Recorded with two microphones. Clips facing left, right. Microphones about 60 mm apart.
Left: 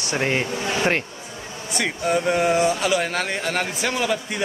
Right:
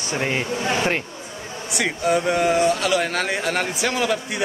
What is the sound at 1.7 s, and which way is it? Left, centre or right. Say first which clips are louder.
Speech: right 1 dB; centre.